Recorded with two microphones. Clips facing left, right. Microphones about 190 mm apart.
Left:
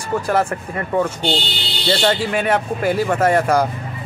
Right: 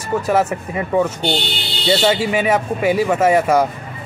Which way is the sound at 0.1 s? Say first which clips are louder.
Right 2 dB; 5° right (ahead or behind).